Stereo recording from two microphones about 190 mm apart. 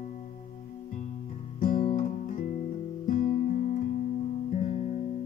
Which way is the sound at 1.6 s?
45° left (ahead or behind).